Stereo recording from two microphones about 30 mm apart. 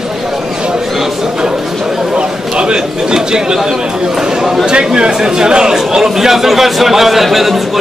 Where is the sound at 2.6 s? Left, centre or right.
Right.